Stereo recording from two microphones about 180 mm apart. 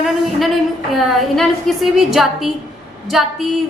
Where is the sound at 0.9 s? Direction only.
Centre (ahead or behind).